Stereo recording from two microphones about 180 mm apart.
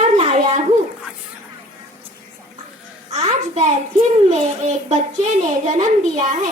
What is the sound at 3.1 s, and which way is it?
A child's voice, 35° right (ahead or behind).